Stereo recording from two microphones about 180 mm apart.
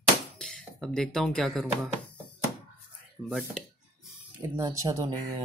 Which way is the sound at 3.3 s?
Centre (ahead or behind).